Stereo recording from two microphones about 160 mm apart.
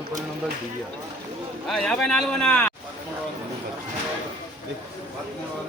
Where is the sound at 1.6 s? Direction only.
5° left (ahead or behind).